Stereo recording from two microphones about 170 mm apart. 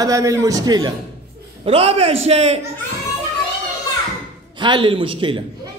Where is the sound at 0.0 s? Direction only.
20° right (ahead or behind).